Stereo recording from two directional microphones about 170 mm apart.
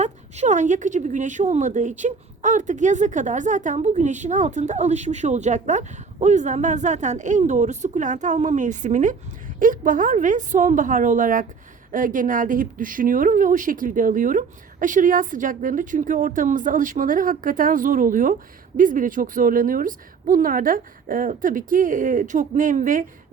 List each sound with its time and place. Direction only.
0.0 s a woman's voice: 45° right (ahead or behind)